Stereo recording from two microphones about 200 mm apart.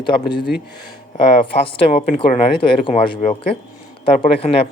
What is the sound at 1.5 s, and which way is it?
Speech, 25° left (ahead or behind).